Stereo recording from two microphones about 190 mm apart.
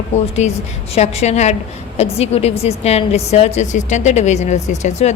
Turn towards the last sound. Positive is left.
turn(degrees=35)  # may be behind; listen again after turning